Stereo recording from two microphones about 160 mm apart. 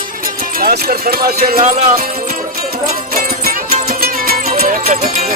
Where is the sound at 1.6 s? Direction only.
45° right (ahead or behind).